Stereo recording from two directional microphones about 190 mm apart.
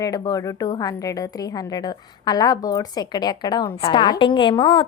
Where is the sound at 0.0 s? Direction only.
20° left (ahead or behind).